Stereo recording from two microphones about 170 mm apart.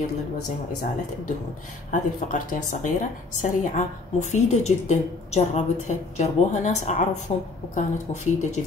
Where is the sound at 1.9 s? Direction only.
50° left (ahead or behind).